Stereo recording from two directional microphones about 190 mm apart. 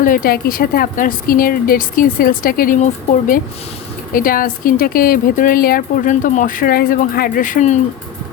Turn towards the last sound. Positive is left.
turn(degrees=40)  # may be behind; listen again after turning